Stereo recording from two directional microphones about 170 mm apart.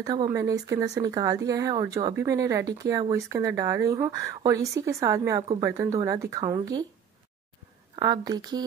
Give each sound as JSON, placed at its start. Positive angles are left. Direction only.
{"t": 0.0, "sound": "speech", "side_deg": -20}
{"t": 7.9, "sound": "speech", "side_deg": -25}